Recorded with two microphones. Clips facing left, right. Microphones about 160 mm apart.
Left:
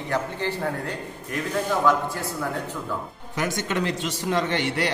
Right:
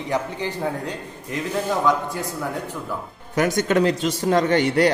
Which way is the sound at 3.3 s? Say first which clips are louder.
Right 7 dB; 45° right (ahead or behind).